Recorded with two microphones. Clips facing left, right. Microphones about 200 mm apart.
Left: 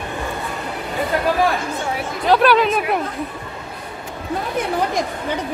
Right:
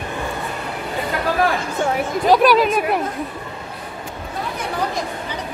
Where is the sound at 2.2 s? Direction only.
10° right (ahead or behind).